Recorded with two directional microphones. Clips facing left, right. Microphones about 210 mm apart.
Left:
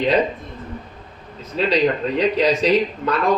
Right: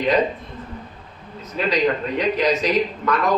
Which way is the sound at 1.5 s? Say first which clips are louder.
Left 2 dB; 30° left (ahead or behind).